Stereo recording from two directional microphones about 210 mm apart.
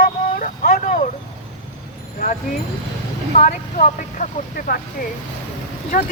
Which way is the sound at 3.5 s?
35° left (ahead or behind).